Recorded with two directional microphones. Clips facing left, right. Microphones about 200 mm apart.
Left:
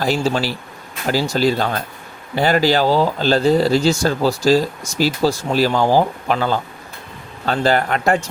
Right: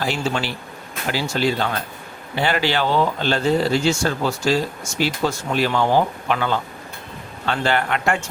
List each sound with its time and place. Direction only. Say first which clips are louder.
0.0 s speech: left 5 dB; 35° left (ahead or behind)